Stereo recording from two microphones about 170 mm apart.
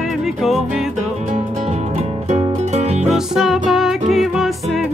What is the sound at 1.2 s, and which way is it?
Music, 40° right (ahead or behind).